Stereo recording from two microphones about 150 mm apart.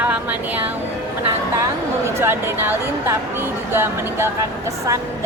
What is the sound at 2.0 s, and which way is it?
A woman's voice, 15° right (ahead or behind).